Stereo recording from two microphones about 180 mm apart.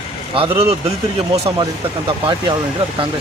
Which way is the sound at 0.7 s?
35° right (ahead or behind).